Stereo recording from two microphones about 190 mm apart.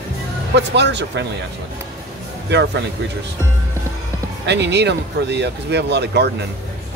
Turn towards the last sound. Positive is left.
turn(degrees=-60)  # may be behind; listen again after turning